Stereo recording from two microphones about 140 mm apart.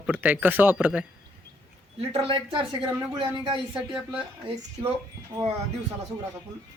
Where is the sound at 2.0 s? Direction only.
40° right (ahead or behind).